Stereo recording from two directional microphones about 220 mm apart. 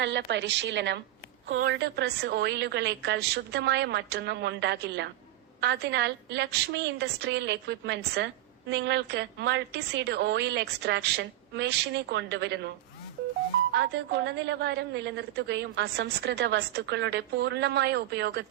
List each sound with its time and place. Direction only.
0.0 s a woman's voice: 55° right (ahead or behind)
13.7 s a woman's voice: 50° right (ahead or behind)